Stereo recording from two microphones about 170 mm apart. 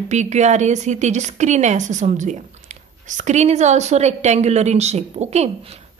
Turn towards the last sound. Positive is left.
turn(degrees=-40)  # may be behind; listen again after turning